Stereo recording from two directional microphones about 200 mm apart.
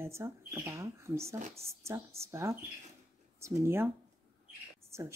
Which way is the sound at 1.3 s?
35° right (ahead or behind).